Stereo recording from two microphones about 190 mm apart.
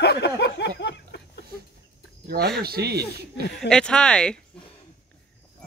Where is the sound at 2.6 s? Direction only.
55° right (ahead or behind).